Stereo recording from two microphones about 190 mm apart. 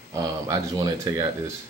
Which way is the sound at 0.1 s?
20° right (ahead or behind).